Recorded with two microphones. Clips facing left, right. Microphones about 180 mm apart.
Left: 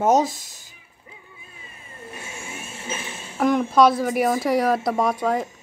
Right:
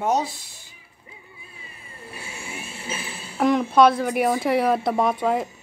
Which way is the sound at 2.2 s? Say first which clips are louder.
Right 1 dB; 35° right (ahead or behind).